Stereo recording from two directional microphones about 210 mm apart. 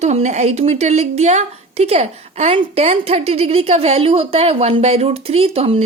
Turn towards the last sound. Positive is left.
turn(degrees=-30)  # may be behind; listen again after turning